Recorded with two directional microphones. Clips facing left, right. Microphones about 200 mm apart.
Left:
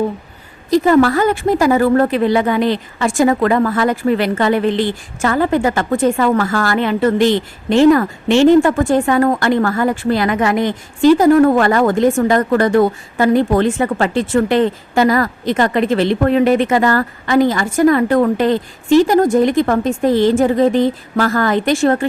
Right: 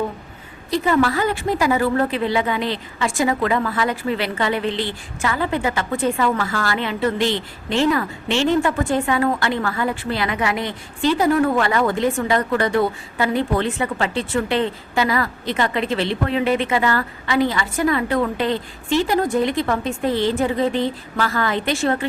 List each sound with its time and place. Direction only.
0.7 s a woman's voice: 45° left (ahead or behind)